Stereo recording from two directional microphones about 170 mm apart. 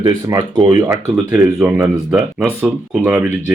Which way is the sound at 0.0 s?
20° right (ahead or behind).